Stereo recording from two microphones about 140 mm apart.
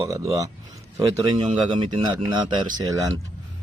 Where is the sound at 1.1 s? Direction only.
30° right (ahead or behind).